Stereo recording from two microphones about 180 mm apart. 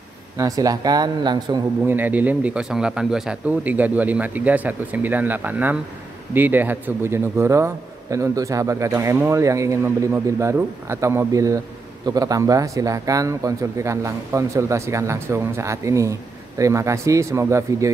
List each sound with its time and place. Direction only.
0.4 s speech: 20° right (ahead or behind)
1.9 s speech: 10° right (ahead or behind)